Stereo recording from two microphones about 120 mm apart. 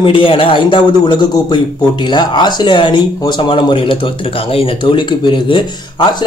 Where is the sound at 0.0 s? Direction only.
45° left (ahead or behind).